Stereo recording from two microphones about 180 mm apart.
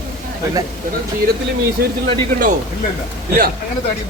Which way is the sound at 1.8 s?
60° right (ahead or behind).